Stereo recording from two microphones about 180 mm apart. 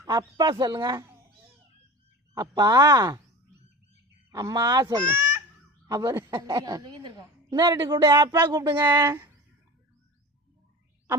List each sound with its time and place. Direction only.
0.0 s a woman's voice: 20° right (ahead or behind)
2.3 s a woman's voice: 20° right (ahead or behind)
4.3 s a woman's voice: 20° right (ahead or behind)